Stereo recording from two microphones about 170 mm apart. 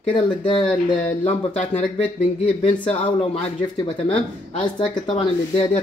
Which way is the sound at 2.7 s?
10° left (ahead or behind).